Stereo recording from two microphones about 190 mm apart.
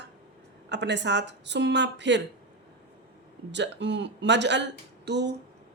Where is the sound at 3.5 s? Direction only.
65° right (ahead or behind).